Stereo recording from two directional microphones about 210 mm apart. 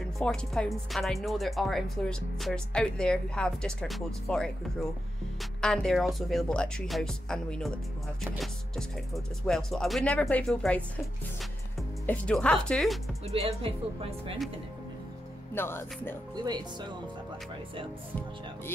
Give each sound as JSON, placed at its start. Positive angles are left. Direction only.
{"t": 0.2, "sound": "speech", "side_deg": 0}
{"t": 5.6, "sound": "speech", "side_deg": 5}
{"t": 12.1, "sound": "speech", "side_deg": 5}
{"t": 13.3, "sound": "speech", "side_deg": -30}
{"t": 15.5, "sound": "speech", "side_deg": 10}